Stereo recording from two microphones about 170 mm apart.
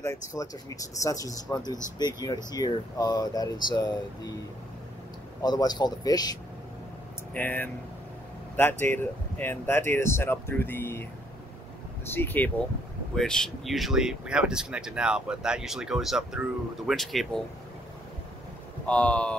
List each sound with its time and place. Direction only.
0.3 s speech: 20° left (ahead or behind)
5.4 s speech: 25° left (ahead or behind)
7.3 s speech: 10° left (ahead or behind)
8.8 s speech: 10° left (ahead or behind)
12.1 s speech: 10° left (ahead or behind)
18.9 s speech: 5° left (ahead or behind)